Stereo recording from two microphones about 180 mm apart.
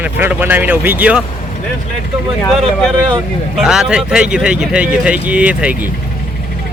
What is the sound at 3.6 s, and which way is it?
Speech, 5° right (ahead or behind).